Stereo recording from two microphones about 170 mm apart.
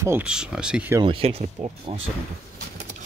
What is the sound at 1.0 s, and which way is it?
Speech, 35° right (ahead or behind).